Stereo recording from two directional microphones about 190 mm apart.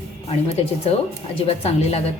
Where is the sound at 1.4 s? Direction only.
35° left (ahead or behind).